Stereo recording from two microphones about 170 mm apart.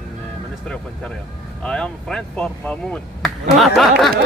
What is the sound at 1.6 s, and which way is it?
Speech, 5° left (ahead or behind).